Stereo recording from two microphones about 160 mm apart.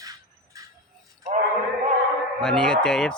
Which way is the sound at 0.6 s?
20° right (ahead or behind).